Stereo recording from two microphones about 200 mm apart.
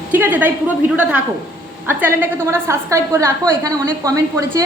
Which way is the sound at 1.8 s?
10° right (ahead or behind).